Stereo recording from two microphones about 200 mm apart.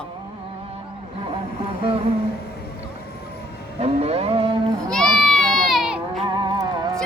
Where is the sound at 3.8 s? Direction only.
30° right (ahead or behind).